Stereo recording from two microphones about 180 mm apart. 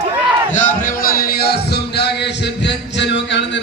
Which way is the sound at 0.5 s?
45° left (ahead or behind).